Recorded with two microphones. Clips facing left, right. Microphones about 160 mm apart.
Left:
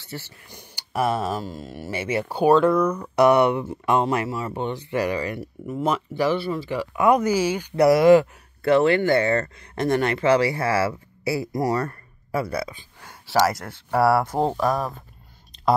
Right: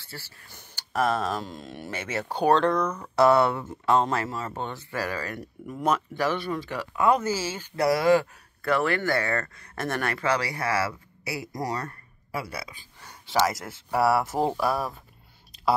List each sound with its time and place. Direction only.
0.0 s speech: 20° left (ahead or behind)
12.3 s speech: 45° left (ahead or behind)
13.5 s speech: centre (ahead or behind)
13.9 s speech: 55° left (ahead or behind)
14.6 s speech: 10° right (ahead or behind)